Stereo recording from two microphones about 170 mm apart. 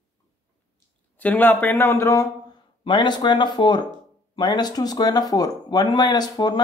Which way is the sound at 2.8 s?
25° left (ahead or behind).